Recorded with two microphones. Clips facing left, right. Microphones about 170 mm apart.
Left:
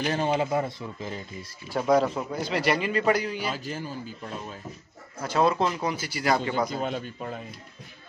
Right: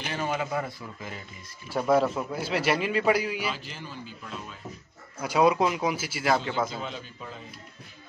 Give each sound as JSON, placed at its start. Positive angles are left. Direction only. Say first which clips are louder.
{"t": 0.0, "sound": "speech", "louder": "left 5 dB", "side_deg": 35}
{"t": 1.7, "sound": "a man's voice", "louder": "left 1 dB", "side_deg": -5}
{"t": 3.5, "sound": "speech", "louder": "left 6 dB", "side_deg": 45}
{"t": 5.2, "sound": "speech", "louder": "right 1 dB", "side_deg": -10}
{"t": 6.8, "sound": "a man's voice", "louder": "left 7 dB", "side_deg": 50}